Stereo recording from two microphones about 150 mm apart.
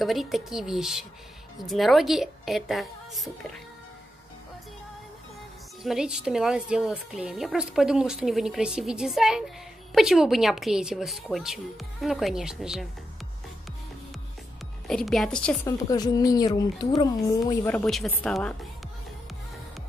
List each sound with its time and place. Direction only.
0.0 s a woman's voice: centre (ahead or behind)
5.8 s a woman's voice: 5° right (ahead or behind)
14.9 s a woman's voice: centre (ahead or behind)
15.6 s a woman's voice: 25° left (ahead or behind)
17.6 s a woman's voice: 5° left (ahead or behind)